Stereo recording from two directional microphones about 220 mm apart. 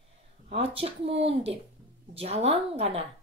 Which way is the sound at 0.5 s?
25° right (ahead or behind).